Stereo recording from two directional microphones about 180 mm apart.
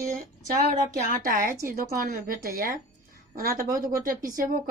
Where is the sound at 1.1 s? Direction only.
55° right (ahead or behind).